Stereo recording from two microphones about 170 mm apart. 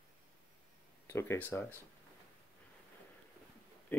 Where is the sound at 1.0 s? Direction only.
15° left (ahead or behind).